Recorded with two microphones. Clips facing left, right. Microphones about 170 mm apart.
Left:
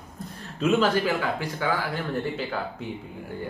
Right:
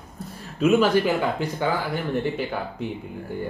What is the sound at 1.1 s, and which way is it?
Speech, 20° right (ahead or behind).